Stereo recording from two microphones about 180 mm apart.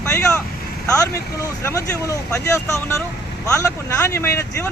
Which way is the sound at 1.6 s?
15° left (ahead or behind).